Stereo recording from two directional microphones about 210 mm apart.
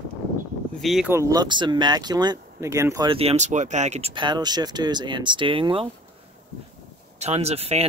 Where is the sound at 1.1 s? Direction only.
15° right (ahead or behind).